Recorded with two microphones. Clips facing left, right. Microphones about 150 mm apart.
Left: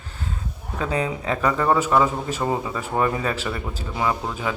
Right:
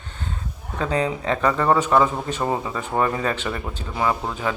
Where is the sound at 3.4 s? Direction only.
5° left (ahead or behind).